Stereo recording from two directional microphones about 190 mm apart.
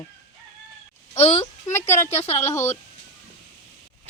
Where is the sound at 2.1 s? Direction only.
35° left (ahead or behind).